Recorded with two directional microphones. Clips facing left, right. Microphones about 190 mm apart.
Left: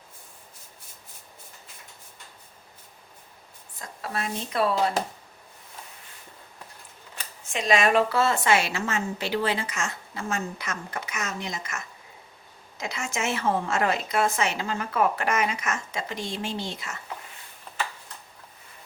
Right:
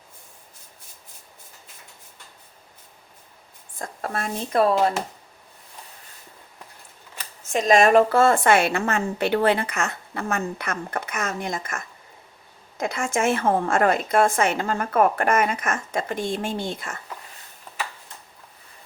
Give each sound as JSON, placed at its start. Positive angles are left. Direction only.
{"t": 3.8, "sound": "a woman's voice", "side_deg": -50}
{"t": 7.5, "sound": "a woman's voice", "side_deg": -45}